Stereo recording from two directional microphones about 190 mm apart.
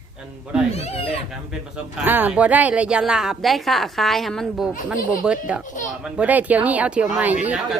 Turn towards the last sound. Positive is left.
turn(degrees=-5)  # may be behind; listen again after turning